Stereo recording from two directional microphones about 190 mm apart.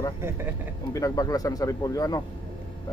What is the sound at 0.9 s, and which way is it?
Speech, 20° left (ahead or behind).